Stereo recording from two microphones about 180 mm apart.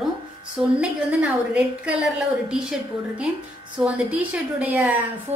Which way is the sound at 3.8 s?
10° right (ahead or behind).